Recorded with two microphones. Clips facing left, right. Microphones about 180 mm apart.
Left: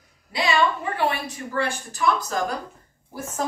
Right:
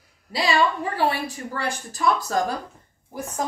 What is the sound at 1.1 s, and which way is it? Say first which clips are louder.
A woman's voice: right 1 dB; 35° right (ahead or behind).